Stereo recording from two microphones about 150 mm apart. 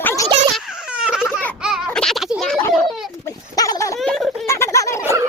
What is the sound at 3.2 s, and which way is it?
Dog, 25° left (ahead or behind).